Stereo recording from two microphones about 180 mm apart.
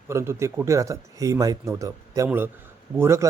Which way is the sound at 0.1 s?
15° right (ahead or behind).